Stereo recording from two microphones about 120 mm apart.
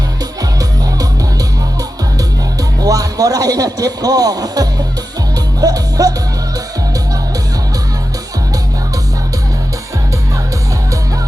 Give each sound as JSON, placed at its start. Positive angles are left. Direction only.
{"t": 2.6, "sound": "speech", "side_deg": -30}
{"t": 5.5, "sound": "music", "side_deg": -30}